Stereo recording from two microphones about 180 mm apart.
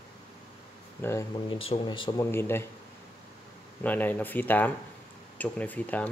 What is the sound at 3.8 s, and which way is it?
Speech, 10° left (ahead or behind).